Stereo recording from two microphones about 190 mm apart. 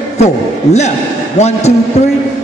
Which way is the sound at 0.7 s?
35° left (ahead or behind).